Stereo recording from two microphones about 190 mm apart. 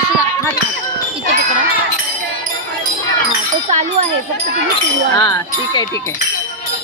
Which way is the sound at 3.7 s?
35° right (ahead or behind).